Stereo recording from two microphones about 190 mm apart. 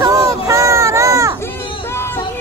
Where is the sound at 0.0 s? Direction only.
15° right (ahead or behind).